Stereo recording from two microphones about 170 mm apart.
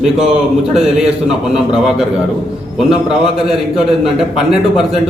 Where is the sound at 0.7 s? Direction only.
5° right (ahead or behind).